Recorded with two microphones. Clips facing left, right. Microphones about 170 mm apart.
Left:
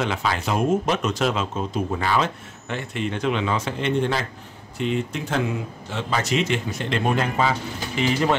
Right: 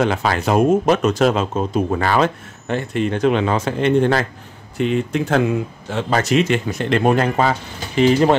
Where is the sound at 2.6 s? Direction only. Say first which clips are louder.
Right 7 dB; 40° right (ahead or behind).